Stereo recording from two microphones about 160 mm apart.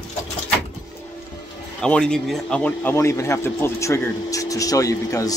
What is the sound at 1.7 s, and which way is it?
A man's voice, 5° left (ahead or behind).